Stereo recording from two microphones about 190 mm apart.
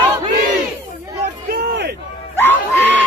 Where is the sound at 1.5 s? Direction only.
60° right (ahead or behind).